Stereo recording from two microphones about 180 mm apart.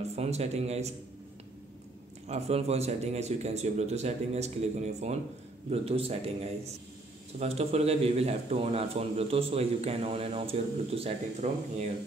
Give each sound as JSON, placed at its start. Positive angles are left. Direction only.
{"t": 0.1, "sound": "a man's voice", "side_deg": -35}
{"t": 2.2, "sound": "a man's voice", "side_deg": -35}